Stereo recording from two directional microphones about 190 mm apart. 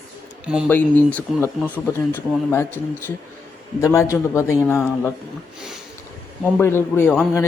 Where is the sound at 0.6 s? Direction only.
10° left (ahead or behind).